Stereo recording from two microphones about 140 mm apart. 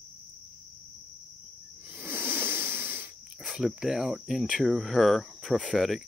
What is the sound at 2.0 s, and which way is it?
Wheeze, 15° right (ahead or behind).